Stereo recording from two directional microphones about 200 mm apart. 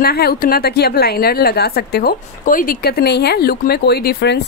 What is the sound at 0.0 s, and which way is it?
A woman's voice, 50° left (ahead or behind).